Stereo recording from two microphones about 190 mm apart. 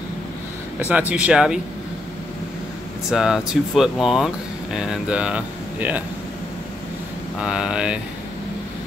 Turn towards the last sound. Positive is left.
turn(degrees=-5)  # may be behind; listen again after turning